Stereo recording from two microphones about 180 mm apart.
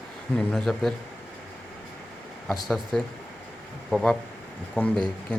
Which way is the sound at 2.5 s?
Centre (ahead or behind).